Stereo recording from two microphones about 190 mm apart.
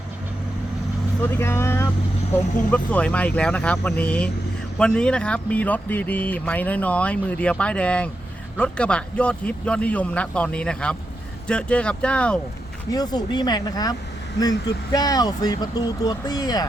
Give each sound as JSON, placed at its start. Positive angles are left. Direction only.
{"t": 1.2, "sound": "speech", "side_deg": 15}
{"t": 12.9, "sound": "speech", "side_deg": 20}
{"t": 14.9, "sound": "speech", "side_deg": 20}